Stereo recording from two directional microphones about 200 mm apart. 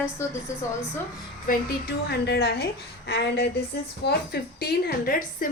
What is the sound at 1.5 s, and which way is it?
A woman's voice, 50° left (ahead or behind).